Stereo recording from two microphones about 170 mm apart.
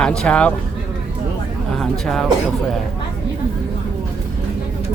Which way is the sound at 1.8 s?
5° left (ahead or behind).